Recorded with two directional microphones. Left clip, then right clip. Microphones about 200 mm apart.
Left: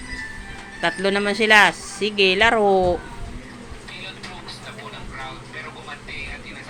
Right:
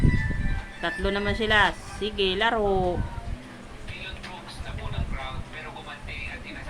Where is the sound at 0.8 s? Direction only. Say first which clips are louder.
Left 7 dB; 20° left (ahead or behind).